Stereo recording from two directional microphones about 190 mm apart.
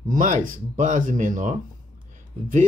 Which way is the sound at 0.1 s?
45° right (ahead or behind).